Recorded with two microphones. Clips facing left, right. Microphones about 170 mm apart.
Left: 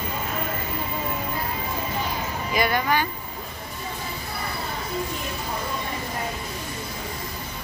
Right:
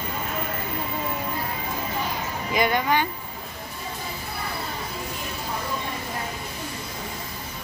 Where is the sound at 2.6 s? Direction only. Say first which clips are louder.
Right 1 dB; 20° right (ahead or behind).